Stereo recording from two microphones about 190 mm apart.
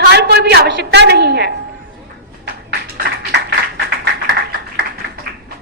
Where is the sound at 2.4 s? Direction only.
60° right (ahead or behind).